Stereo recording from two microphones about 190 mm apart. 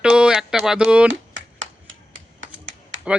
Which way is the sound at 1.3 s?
90° right.